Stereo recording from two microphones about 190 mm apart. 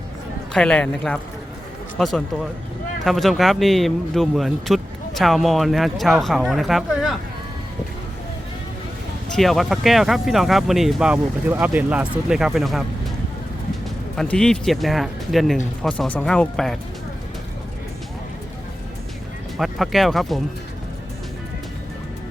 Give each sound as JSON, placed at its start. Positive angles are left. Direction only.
{"t": 0.5, "sound": "a man's voice", "side_deg": 5}
{"t": 9.3, "sound": "a man's voice", "side_deg": 0}
{"t": 14.2, "sound": "a man's voice", "side_deg": 5}
{"t": 19.5, "sound": "a man's voice", "side_deg": 0}